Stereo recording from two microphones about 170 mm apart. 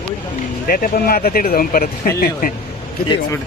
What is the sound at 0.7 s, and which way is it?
Speech, 60° left (ahead or behind).